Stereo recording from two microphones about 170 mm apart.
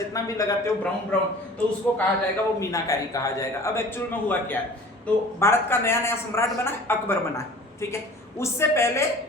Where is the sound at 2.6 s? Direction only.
20° left (ahead or behind).